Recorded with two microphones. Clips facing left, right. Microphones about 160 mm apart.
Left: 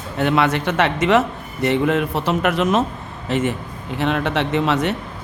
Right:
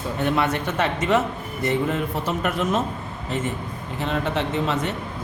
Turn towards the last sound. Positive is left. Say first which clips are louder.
# left 5 dB
turn(degrees=75)  # may be behind; listen again after turning